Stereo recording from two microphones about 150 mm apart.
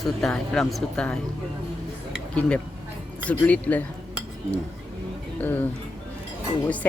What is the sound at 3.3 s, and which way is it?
Speech, 10° left (ahead or behind).